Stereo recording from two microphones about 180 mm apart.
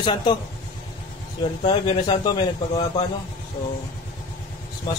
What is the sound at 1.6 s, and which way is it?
Speech, 30° left (ahead or behind).